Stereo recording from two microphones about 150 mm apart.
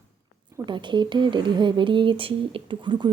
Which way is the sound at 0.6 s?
30° right (ahead or behind).